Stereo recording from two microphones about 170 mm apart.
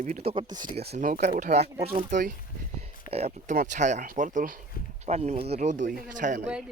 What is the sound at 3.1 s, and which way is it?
Speech, 40° right (ahead or behind).